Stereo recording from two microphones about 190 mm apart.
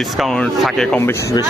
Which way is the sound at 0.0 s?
Centre (ahead or behind).